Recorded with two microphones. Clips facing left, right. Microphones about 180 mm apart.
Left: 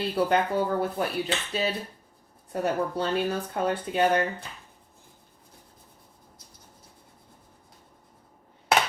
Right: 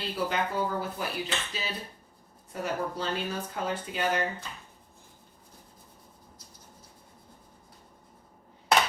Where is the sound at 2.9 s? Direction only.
60° left (ahead or behind).